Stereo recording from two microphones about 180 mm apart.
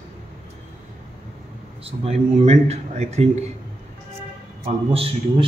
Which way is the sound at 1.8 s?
35° right (ahead or behind).